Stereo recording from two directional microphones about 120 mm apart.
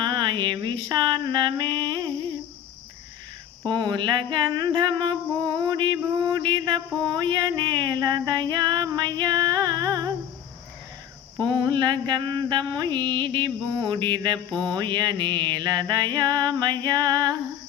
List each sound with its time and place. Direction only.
0.0 s speech: 40° right (ahead or behind)
3.6 s music: 40° right (ahead or behind)
11.4 s music: 40° right (ahead or behind)